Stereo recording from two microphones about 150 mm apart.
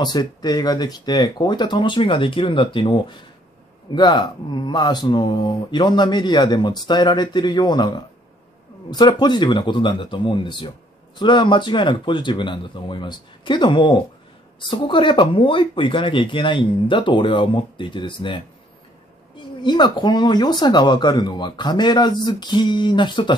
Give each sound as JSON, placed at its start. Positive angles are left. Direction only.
{"t": 0.0, "sound": "speech", "side_deg": 30}
{"t": 19.6, "sound": "speech", "side_deg": 30}